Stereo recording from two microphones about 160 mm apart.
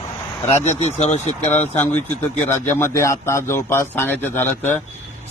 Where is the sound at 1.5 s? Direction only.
10° left (ahead or behind).